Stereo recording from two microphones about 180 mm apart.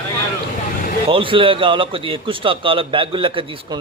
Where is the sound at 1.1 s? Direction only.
30° right (ahead or behind).